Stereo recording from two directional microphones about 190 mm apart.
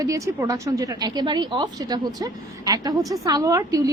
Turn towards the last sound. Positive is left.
turn(degrees=-15)  # may be behind; listen again after turning